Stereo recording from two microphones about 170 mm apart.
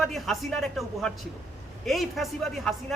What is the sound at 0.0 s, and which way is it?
Speech, centre (ahead or behind).